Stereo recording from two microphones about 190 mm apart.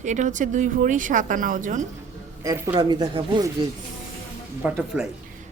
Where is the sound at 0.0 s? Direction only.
40° right (ahead or behind).